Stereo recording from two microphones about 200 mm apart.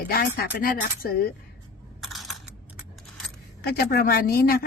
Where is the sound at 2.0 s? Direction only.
Centre (ahead or behind).